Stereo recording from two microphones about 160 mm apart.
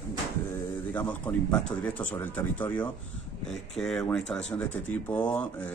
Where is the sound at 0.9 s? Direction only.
10° left (ahead or behind).